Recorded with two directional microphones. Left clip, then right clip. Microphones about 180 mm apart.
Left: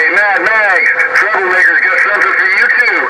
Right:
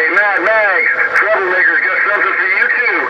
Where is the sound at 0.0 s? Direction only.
50° left (ahead or behind).